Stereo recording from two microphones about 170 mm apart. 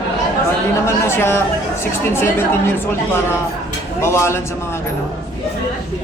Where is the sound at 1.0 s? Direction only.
15° left (ahead or behind).